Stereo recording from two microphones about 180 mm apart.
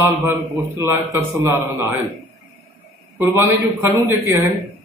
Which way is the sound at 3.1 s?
15° right (ahead or behind).